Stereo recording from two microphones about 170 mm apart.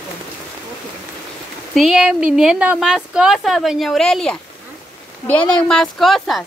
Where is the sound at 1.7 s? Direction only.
Centre (ahead or behind).